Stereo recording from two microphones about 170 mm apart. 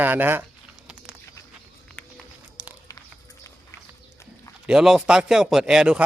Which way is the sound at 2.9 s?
20° left (ahead or behind).